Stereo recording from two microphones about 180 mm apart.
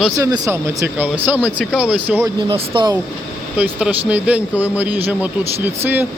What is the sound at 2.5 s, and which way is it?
Speech, 25° right (ahead or behind).